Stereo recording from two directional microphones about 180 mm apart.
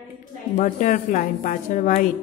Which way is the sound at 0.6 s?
45° left (ahead or behind).